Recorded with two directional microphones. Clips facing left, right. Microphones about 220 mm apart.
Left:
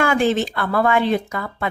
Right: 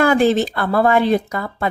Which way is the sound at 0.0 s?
35° right (ahead or behind).